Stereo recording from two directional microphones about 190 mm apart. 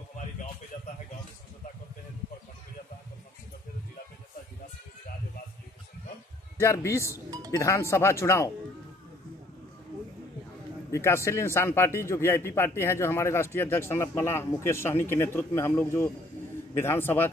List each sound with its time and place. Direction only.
6.6 s speech: 15° left (ahead or behind)
7.2 s music: 20° right (ahead or behind)
7.5 s speech: 15° left (ahead or behind)
10.9 s speech: 15° left (ahead or behind)